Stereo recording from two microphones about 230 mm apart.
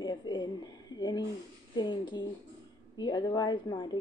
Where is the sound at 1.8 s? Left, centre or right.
Centre.